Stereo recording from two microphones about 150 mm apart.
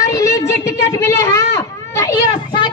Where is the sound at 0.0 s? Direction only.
20° left (ahead or behind).